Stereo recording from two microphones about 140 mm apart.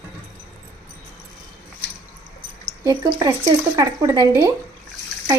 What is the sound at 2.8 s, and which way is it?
Speech, 25° right (ahead or behind).